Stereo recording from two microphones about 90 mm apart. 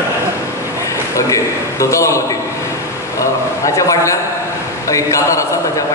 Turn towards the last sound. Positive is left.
turn(degrees=35)  # may be behind; listen again after turning